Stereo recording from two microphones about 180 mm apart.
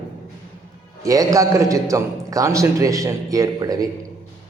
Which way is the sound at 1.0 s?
20° right (ahead or behind).